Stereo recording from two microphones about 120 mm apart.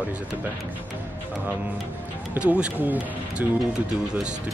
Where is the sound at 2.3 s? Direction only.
10° right (ahead or behind).